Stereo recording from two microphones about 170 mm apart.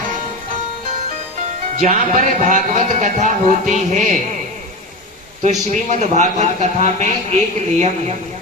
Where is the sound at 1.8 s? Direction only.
50° right (ahead or behind).